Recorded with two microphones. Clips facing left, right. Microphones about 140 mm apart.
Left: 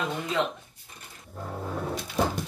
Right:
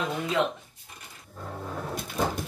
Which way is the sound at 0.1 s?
Centre (ahead or behind).